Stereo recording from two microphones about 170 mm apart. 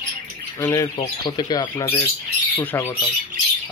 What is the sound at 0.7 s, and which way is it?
Speech, 25° left (ahead or behind).